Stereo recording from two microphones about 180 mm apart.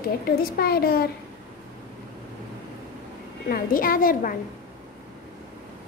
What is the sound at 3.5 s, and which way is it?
Speech, 50° left (ahead or behind).